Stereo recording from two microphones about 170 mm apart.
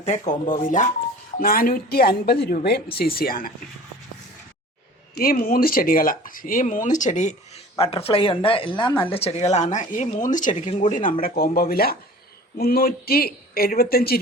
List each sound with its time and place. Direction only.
0.0 s speech: 45° left (ahead or behind)
1.4 s speech: 60° left (ahead or behind)
5.1 s speech: 60° left (ahead or behind); by 7.6 s 45° left (ahead or behind)
7.8 s speech: 35° left (ahead or behind); by 14.2 s 60° left (ahead or behind)